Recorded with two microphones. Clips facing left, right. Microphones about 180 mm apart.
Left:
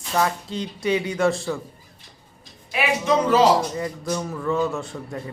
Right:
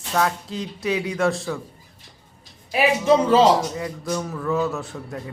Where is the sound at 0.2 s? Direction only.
Centre (ahead or behind).